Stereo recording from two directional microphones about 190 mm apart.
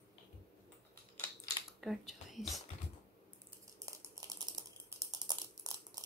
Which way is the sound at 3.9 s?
15° right (ahead or behind).